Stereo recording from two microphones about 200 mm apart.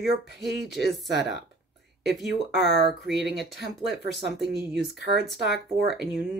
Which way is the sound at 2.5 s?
Centre (ahead or behind).